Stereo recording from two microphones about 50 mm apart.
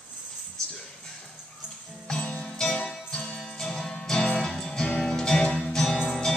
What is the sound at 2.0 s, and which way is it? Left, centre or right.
Music, centre.